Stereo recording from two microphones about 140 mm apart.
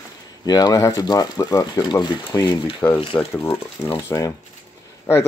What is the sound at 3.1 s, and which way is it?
Speech, 15° left (ahead or behind).